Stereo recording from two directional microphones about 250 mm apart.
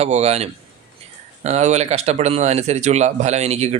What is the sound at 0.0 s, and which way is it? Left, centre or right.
Speech, right.